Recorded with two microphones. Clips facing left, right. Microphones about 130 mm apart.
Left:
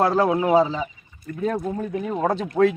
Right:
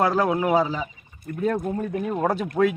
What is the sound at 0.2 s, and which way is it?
Speech, 25° left (ahead or behind).